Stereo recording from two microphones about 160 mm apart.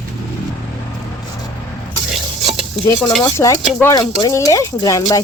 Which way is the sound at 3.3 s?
20° left (ahead or behind).